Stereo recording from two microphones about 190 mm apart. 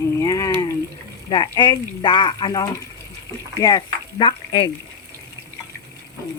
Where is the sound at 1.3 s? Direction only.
20° left (ahead or behind).